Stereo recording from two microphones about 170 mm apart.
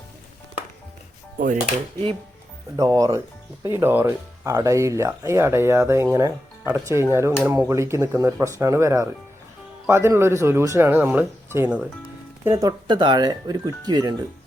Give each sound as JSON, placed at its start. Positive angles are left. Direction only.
{"t": 2.7, "sound": "speech", "side_deg": -20}